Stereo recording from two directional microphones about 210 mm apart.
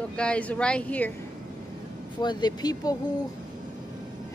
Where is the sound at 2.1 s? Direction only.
20° left (ahead or behind).